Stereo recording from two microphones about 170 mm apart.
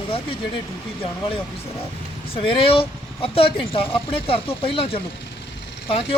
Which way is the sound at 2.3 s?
35° left (ahead or behind).